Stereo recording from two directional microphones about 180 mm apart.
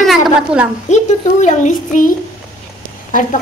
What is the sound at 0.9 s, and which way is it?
Speech, 40° left (ahead or behind).